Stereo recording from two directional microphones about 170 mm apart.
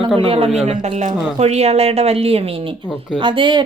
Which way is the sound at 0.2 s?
35° right (ahead or behind).